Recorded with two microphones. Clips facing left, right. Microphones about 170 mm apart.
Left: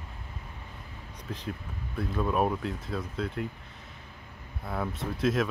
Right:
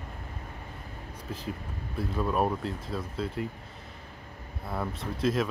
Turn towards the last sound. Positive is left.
turn(degrees=0)  # may be behind; listen again after turning